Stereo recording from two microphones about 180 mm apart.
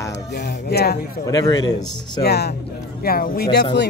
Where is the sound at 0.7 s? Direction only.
65° left (ahead or behind).